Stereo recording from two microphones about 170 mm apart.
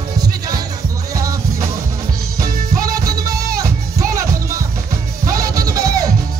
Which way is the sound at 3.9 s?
20° right (ahead or behind).